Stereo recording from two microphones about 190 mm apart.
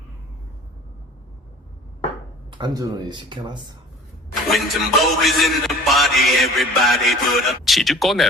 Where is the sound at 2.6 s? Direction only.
20° right (ahead or behind).